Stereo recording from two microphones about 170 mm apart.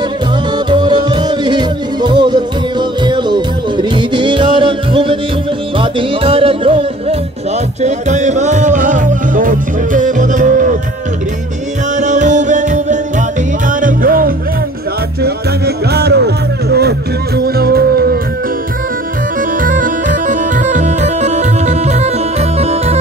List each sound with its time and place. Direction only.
0.7 s music: 25° right (ahead or behind)
7.8 s music: 45° right (ahead or behind)
12.0 s music: 45° right (ahead or behind)
15.2 s music: 70° right (ahead or behind)
17.6 s music: 65° right (ahead or behind)
19.6 s music: 50° right (ahead or behind)